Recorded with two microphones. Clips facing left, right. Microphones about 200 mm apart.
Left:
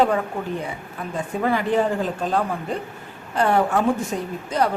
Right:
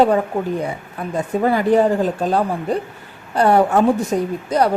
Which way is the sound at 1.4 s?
40° right (ahead or behind).